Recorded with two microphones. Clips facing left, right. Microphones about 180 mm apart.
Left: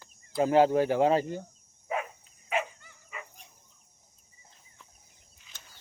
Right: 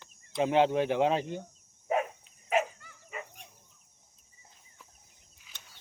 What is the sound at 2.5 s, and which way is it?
Dog, 40° right (ahead or behind).